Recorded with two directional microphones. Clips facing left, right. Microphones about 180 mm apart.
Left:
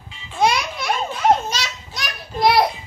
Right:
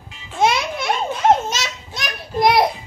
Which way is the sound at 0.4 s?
25° right (ahead or behind).